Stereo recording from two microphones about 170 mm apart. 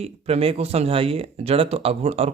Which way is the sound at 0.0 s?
35° right (ahead or behind).